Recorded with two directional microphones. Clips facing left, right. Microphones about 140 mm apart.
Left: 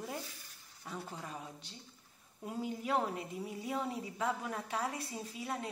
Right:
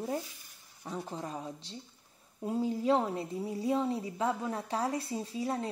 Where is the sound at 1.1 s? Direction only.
35° right (ahead or behind).